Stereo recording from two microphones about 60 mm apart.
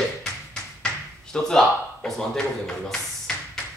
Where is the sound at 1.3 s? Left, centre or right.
Centre.